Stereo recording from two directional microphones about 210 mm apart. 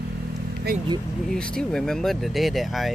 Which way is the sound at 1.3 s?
5° left (ahead or behind).